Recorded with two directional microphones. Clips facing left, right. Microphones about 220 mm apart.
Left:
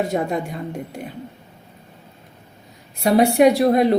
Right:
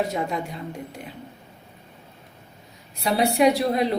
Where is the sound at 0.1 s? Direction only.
50° left (ahead or behind).